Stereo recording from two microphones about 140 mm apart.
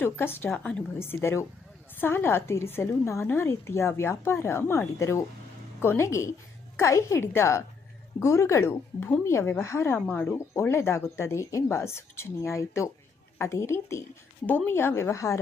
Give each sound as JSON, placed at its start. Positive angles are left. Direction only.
{"t": 0.0, "sound": "a woman's voice", "side_deg": 15}